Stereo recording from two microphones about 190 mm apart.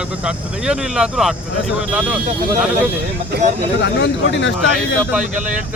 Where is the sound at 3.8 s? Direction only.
65° left (ahead or behind).